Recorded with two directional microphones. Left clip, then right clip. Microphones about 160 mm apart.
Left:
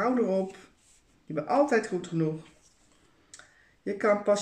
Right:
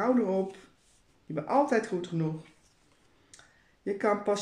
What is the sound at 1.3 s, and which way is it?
Speech, 20° right (ahead or behind).